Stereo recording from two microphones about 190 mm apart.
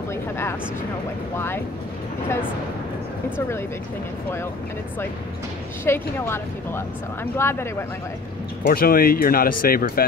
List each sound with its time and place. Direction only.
0.1 s speech: 15° left (ahead or behind)
3.3 s speech: 15° left (ahead or behind)
5.9 s speech: 10° left (ahead or behind)
8.6 s speech: 50° left (ahead or behind)